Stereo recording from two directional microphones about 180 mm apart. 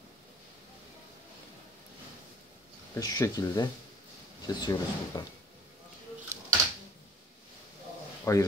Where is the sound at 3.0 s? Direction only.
20° left (ahead or behind).